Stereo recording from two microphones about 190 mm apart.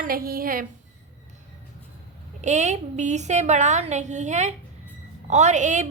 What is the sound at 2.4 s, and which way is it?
A woman's voice, 40° right (ahead or behind).